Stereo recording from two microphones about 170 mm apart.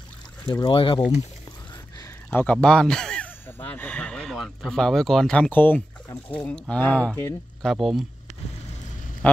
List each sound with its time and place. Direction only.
0.5 s speech: 25° left (ahead or behind)
2.3 s speech: 5° left (ahead or behind)
7.6 s speech: centre (ahead or behind)
9.2 s a sound: 10° left (ahead or behind)